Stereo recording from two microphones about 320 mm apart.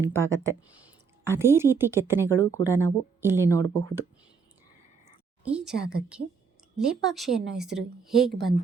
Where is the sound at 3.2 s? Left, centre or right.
Centre.